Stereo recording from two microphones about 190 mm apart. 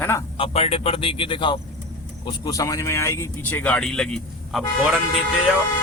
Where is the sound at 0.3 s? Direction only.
30° left (ahead or behind); by 4.9 s centre (ahead or behind).